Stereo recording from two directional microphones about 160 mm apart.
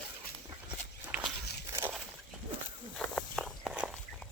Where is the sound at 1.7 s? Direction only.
15° right (ahead or behind).